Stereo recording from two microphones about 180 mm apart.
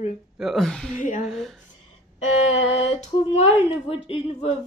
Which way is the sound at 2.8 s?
35° left (ahead or behind).